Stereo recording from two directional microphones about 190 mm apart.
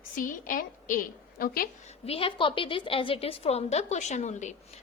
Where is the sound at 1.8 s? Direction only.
30° left (ahead or behind).